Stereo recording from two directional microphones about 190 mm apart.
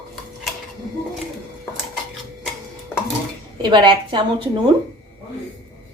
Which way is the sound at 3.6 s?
25° right (ahead or behind).